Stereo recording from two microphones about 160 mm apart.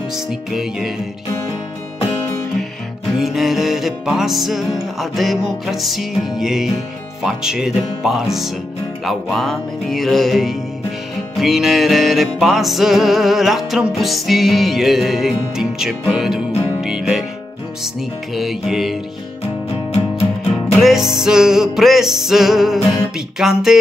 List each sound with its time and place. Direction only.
0.5 s music: 5° right (ahead or behind)
3.1 s music: centre (ahead or behind)
18.3 s music: centre (ahead or behind)
19.9 s music: 40° left (ahead or behind)
20.8 s music: centre (ahead or behind)